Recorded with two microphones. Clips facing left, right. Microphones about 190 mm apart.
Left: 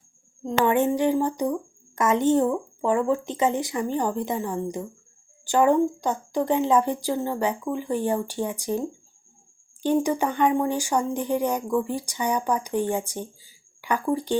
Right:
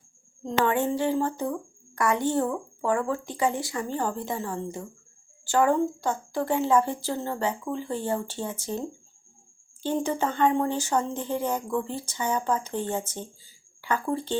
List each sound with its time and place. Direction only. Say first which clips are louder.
0.6 s speech: left 4 dB; 15° left (ahead or behind)
9.8 s speech: left 4 dB; 15° left (ahead or behind)